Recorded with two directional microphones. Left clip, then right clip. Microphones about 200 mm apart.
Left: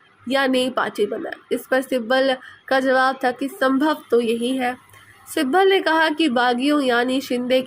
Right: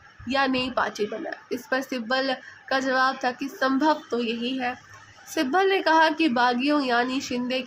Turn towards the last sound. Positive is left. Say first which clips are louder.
# left 8 dB
turn(degrees=20)  # may be behind; listen again after turning